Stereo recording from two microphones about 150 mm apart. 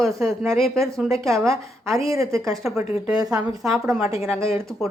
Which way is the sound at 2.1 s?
20° right (ahead or behind).